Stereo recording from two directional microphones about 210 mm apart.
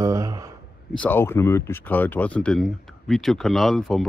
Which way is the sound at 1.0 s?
10° left (ahead or behind).